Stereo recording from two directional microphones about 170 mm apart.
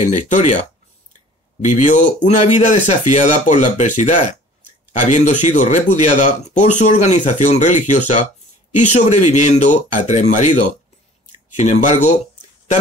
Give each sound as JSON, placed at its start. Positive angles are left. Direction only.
{"t": 0.0, "sound": "speech", "side_deg": 45}
{"t": 1.6, "sound": "speech", "side_deg": 45}